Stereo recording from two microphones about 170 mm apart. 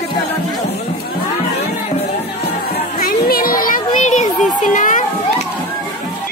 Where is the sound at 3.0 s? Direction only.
60° left (ahead or behind).